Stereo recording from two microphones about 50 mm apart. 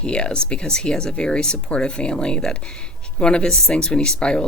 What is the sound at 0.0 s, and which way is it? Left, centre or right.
Speech, centre.